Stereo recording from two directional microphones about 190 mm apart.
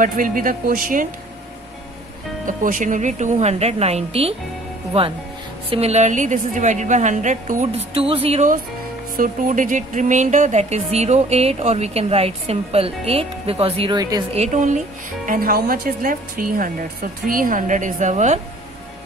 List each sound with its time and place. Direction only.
0.0 s speech: 45° right (ahead or behind)
2.4 s speech: 45° right (ahead or behind)
5.7 s speech: 35° right (ahead or behind)
9.1 s speech: 45° right (ahead or behind); by 14.2 s 25° right (ahead or behind)
14.3 s speech: 40° right (ahead or behind)